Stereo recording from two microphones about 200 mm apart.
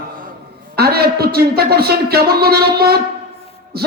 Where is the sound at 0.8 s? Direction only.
50° right (ahead or behind).